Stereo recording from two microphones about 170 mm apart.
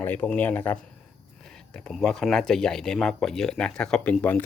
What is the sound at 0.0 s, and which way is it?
Speech, 10° left (ahead or behind).